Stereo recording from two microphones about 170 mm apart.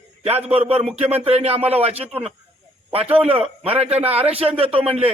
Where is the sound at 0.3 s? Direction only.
35° right (ahead or behind).